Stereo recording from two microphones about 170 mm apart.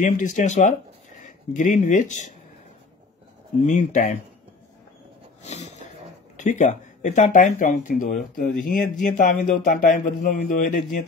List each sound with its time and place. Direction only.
0.0 s speech: 45° left (ahead or behind)
3.6 s speech: 45° left (ahead or behind)
5.4 s dog: 40° left (ahead or behind)
6.3 s speech: 45° left (ahead or behind)